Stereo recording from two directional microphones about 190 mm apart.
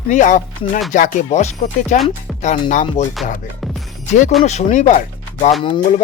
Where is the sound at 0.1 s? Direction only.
40° left (ahead or behind).